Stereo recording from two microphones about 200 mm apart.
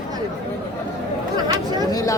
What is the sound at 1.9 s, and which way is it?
Chatter, 15° left (ahead or behind).